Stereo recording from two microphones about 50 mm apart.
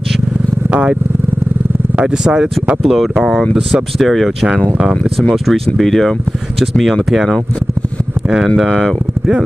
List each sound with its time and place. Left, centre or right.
0.7 s speech: right
2.0 s speech: centre
2.8 s speech: centre
8.6 s speech: centre